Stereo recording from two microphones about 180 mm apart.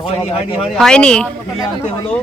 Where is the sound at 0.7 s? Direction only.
5° left (ahead or behind).